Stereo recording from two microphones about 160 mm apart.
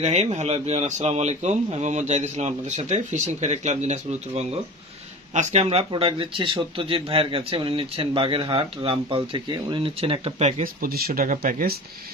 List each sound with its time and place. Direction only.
0.0 s speech: 40° right (ahead or behind)
10.6 s speech: 65° right (ahead or behind)